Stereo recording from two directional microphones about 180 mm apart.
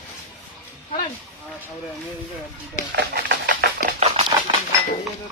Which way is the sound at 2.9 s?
60° right (ahead or behind).